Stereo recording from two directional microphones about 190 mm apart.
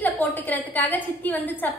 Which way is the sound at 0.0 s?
10° left (ahead or behind).